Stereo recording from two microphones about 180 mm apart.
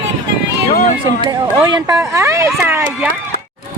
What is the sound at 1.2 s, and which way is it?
Speech, 20° right (ahead or behind).